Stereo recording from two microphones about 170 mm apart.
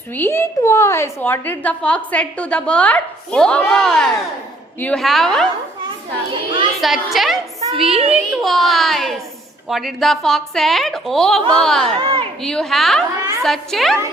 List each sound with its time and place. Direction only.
0.1 s a woman's voice: 15° left (ahead or behind)
6.8 s a woman's voice: centre (ahead or behind)
11.9 s a woman's voice: 30° right (ahead or behind)
12.4 s a woman's voice: 5° left (ahead or behind)